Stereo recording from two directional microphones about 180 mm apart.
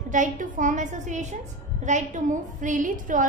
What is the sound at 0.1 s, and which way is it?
A woman's voice, 45° right (ahead or behind).